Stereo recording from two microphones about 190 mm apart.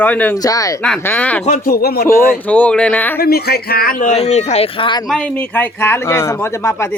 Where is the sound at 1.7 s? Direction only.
55° left (ahead or behind).